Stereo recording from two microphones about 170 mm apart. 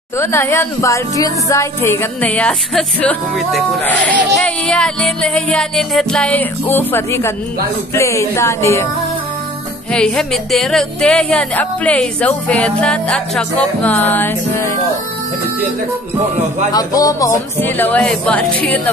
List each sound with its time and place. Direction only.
0.2 s speech: 15° left (ahead or behind)
9.9 s speech: 5° left (ahead or behind)
16.7 s speech: 20° left (ahead or behind)